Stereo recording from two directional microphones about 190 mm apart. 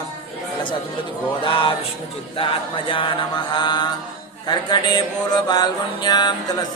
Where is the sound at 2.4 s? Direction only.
25° left (ahead or behind).